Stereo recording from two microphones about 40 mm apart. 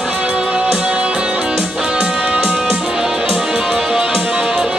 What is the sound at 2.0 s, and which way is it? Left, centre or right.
Music, right.